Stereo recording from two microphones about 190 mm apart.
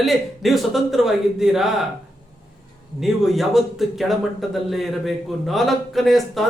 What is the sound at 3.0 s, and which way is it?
A man's voice, centre (ahead or behind).